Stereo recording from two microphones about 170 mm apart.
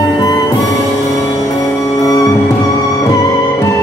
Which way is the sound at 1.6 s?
20° left (ahead or behind).